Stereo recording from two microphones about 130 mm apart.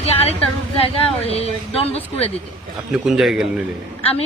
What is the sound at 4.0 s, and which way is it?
Speech, 50° left (ahead or behind).